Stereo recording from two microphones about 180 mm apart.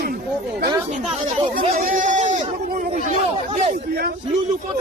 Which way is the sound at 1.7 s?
45° right (ahead or behind).